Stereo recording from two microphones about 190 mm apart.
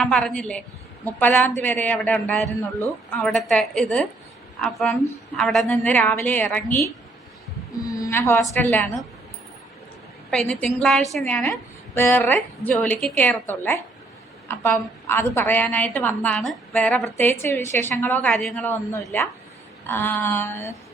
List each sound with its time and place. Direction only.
0.0 s a woman's voice: 5° left (ahead or behind)
10.3 s a woman's voice: 5° left (ahead or behind)